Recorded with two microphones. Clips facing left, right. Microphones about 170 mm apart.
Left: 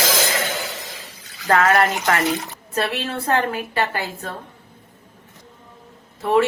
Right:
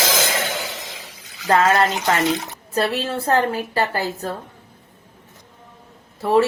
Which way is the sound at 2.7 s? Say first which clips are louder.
Right 3 dB; 35° right (ahead or behind).